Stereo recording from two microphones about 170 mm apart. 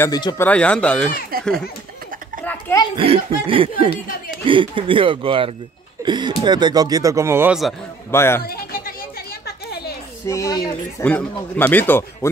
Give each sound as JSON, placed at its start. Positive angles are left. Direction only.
{"t": 0.0, "sound": "speech", "side_deg": 25}
{"t": 0.4, "sound": "speech", "side_deg": 5}
{"t": 1.3, "sound": "a child's voice", "side_deg": -60}
{"t": 2.4, "sound": "a sound", "side_deg": 20}
{"t": 3.0, "sound": "a man's voice", "side_deg": -30}
{"t": 8.1, "sound": "speech", "side_deg": 15}
{"t": 10.2, "sound": "speech", "side_deg": 20}
{"t": 11.1, "sound": "speech", "side_deg": 10}